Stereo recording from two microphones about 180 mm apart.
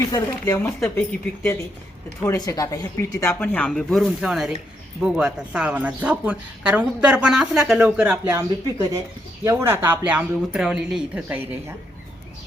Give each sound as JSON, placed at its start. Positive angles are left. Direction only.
{"t": 0.1, "sound": "speech", "side_deg": 20}